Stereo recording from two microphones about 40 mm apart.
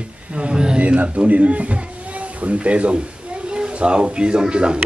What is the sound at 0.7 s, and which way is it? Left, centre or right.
A man's voice, right.